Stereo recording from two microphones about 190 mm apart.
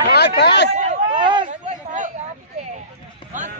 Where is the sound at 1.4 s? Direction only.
40° right (ahead or behind).